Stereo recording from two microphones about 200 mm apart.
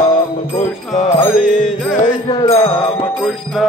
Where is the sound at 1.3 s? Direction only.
Centre (ahead or behind).